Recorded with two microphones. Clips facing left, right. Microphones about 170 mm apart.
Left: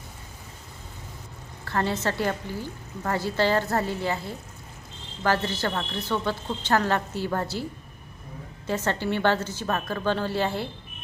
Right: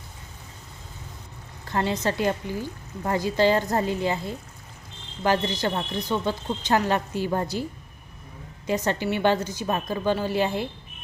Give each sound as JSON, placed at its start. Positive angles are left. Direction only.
{"t": 1.6, "sound": "a woman's voice", "side_deg": -15}
{"t": 8.6, "sound": "a woman's voice", "side_deg": -15}